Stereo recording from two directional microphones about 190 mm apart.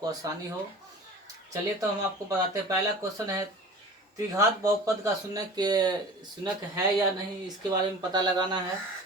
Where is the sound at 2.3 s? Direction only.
15° right (ahead or behind).